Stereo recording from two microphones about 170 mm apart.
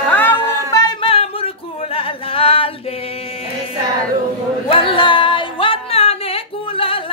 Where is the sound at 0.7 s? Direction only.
30° left (ahead or behind).